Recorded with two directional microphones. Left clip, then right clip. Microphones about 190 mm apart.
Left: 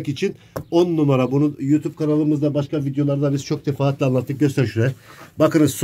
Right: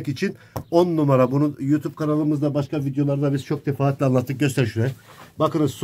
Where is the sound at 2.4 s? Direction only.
35° right (ahead or behind).